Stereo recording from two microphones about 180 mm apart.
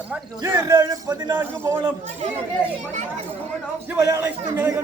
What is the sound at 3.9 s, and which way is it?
Speech, 15° right (ahead or behind).